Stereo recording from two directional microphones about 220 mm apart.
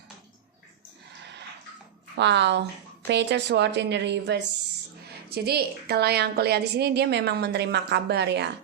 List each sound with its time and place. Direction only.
2.1 s a woman's voice: 50° right (ahead or behind)